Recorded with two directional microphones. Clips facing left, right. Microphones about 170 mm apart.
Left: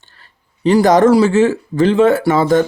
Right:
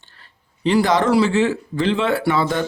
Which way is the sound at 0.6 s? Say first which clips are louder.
Left 7 dB; 45° left (ahead or behind).